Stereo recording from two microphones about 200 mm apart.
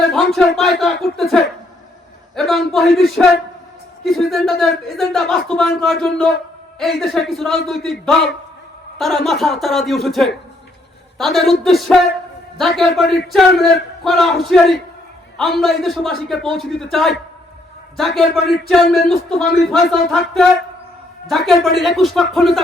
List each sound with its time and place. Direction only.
0.1 s a man's voice: centre (ahead or behind)